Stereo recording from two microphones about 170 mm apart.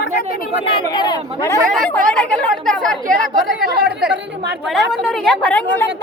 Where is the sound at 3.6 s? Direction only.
70° right (ahead or behind).